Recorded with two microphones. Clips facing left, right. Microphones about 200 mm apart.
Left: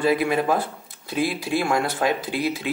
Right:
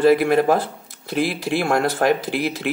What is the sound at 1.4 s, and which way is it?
Speech, 60° right (ahead or behind).